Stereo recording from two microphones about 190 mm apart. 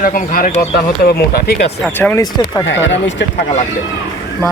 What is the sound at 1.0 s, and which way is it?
Speech, 55° left (ahead or behind).